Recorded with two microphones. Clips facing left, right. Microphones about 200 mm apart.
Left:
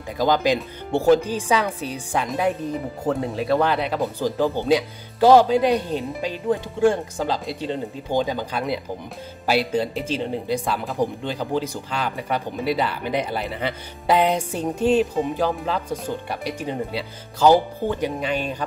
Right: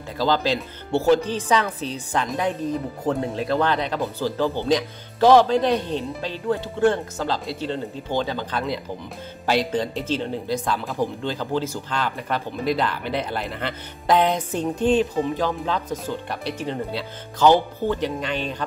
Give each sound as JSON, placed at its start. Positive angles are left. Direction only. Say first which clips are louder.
{"t": 0.2, "sound": "speech", "louder": "left 2 dB", "side_deg": 15}
{"t": 2.2, "sound": "speech", "louder": "left 2 dB", "side_deg": 0}